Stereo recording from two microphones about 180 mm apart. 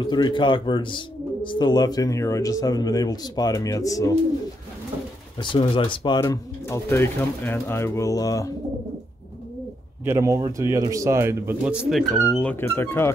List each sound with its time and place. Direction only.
0.0 s speech: 25° left (ahead or behind)
5.4 s speech: 25° left (ahead or behind)
10.0 s a man's voice: 15° right (ahead or behind)
12.1 s speech: 5° left (ahead or behind)